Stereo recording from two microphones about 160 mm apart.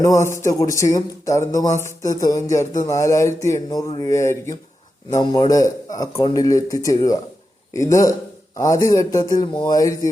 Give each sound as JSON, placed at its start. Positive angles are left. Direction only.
{"t": 0.0, "sound": "speech", "side_deg": 20}